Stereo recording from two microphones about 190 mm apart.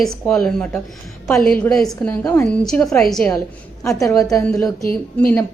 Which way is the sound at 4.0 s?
20° left (ahead or behind).